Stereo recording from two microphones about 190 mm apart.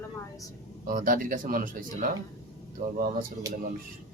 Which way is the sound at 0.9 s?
45° right (ahead or behind).